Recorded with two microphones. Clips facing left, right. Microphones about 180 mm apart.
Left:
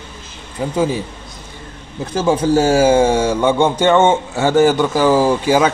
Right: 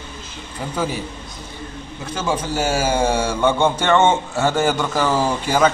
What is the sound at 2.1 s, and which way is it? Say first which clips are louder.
Speech: left 9 dB; 35° left (ahead or behind).